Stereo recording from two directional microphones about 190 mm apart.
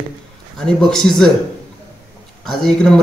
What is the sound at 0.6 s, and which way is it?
Speech, 5° left (ahead or behind).